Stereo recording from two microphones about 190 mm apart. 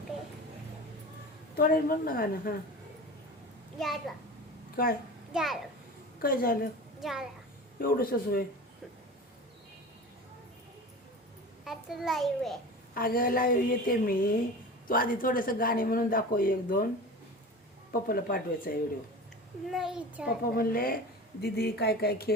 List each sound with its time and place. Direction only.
1.5 s speech: 50° left (ahead or behind)
3.8 s a child's voice: centre (ahead or behind)
4.8 s speech: 50° left (ahead or behind)
5.3 s a child's voice: centre (ahead or behind)
6.2 s speech: 50° left (ahead or behind)
7.0 s a child's voice: centre (ahead or behind)
7.8 s speech: 50° left (ahead or behind)
11.6 s a child's voice: centre (ahead or behind)
12.9 s speech: 50° left (ahead or behind)
17.9 s speech: 50° left (ahead or behind)
19.7 s a child's voice: 5° right (ahead or behind)
20.2 s speech: 50° left (ahead or behind)